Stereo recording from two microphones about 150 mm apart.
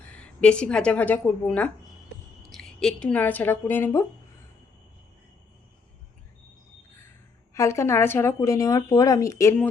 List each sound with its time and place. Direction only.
0.0 s a woman's voice: 10° left (ahead or behind)
7.5 s speech: 20° left (ahead or behind)